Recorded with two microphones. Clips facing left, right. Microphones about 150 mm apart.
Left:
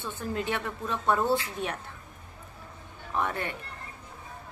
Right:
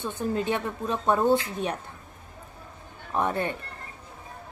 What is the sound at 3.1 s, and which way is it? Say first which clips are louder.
Speech: right 4 dB; 25° right (ahead or behind).